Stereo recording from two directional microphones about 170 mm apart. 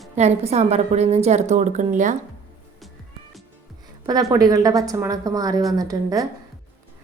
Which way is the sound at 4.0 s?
20° right (ahead or behind).